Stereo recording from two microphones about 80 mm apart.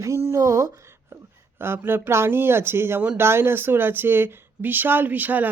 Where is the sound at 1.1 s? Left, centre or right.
Right.